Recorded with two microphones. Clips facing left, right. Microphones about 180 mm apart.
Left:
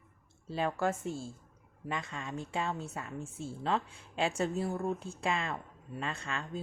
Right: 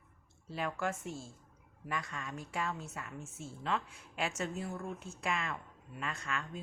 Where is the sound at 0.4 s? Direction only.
30° left (ahead or behind).